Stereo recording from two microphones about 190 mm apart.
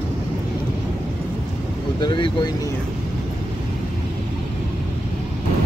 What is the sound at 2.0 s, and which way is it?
Speech, 25° left (ahead or behind).